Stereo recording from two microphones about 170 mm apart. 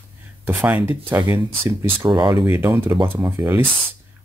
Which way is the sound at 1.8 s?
30° right (ahead or behind).